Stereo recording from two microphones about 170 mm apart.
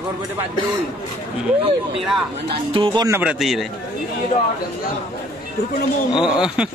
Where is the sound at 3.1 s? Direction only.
5° right (ahead or behind).